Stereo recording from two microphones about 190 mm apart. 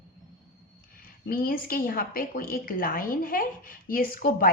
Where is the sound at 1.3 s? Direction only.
50° left (ahead or behind).